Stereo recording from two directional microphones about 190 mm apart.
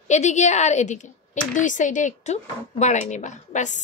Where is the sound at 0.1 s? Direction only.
40° left (ahead or behind).